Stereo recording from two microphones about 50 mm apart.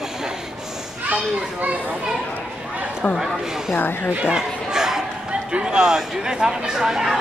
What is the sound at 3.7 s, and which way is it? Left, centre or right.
Speech, left.